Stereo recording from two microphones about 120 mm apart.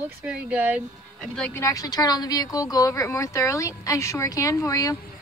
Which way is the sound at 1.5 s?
25° left (ahead or behind).